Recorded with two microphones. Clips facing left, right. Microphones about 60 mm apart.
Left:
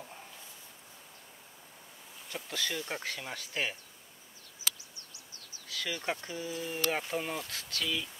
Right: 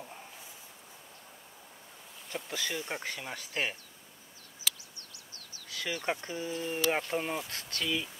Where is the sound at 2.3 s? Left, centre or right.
Centre.